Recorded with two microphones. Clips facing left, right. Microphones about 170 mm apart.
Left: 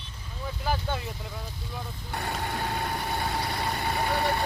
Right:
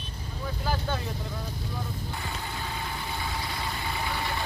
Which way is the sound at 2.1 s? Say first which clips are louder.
Left 4 dB; 65° left (ahead or behind).